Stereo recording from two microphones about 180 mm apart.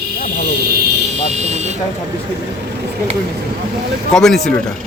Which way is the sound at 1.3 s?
40° right (ahead or behind).